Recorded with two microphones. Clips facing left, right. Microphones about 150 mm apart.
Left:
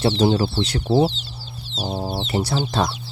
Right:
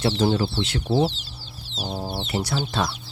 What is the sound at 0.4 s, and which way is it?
Speech, 40° left (ahead or behind).